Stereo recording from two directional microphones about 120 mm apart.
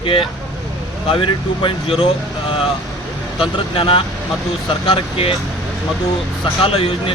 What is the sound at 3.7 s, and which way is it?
Speech, 55° left (ahead or behind).